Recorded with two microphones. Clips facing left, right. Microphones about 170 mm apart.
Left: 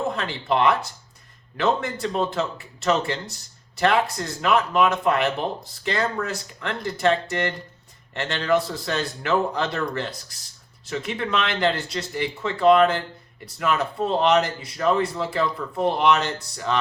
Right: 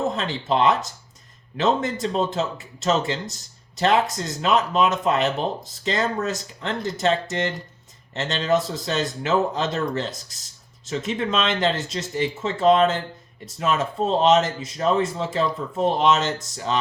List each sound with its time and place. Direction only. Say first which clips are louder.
0.2 s speech: right 1 dB; 20° right (ahead or behind)